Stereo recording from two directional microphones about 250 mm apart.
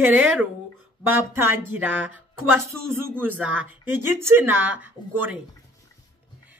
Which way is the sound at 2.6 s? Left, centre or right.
Right.